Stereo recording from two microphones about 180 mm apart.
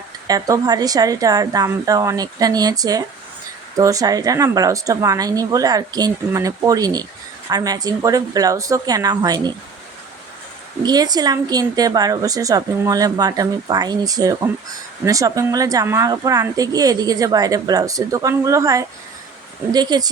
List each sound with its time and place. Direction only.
0.3 s a woman's voice: 20° right (ahead or behind)
10.8 s a woman's voice: 20° right (ahead or behind)